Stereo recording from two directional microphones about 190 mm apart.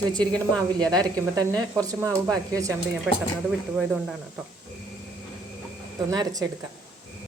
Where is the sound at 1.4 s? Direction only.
20° right (ahead or behind).